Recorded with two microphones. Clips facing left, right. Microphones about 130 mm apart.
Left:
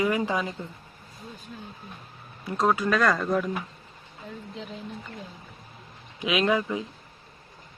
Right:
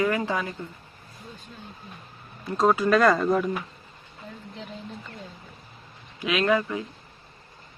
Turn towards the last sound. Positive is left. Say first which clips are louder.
# right 1 dB
turn(degrees=20)  # may be behind; listen again after turning